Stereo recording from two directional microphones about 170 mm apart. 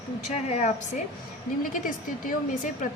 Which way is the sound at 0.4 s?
40° left (ahead or behind).